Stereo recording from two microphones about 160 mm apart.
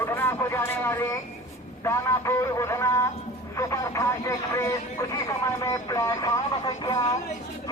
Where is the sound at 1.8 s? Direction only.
15° left (ahead or behind).